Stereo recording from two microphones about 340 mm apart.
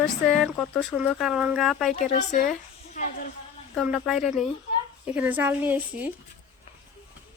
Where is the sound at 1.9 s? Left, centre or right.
Left.